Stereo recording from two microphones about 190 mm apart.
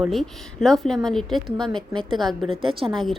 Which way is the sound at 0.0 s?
Centre (ahead or behind).